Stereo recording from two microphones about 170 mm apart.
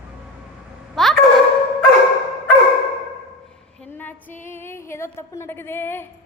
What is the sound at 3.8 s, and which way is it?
Female singing, 10° left (ahead or behind).